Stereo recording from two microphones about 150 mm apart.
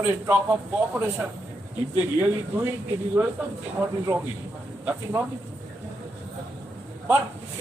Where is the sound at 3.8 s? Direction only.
15° right (ahead or behind).